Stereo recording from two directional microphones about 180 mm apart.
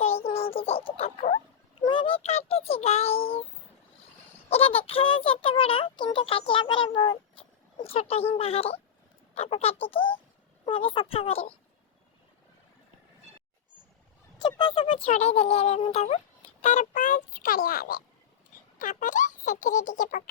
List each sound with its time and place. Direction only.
0.2 s speech: 35° left (ahead or behind)
1.8 s child singing: 30° left (ahead or behind)
4.4 s speech: 35° left (ahead or behind)
14.4 s speech: 25° left (ahead or behind); by 20.2 s 45° left (ahead or behind)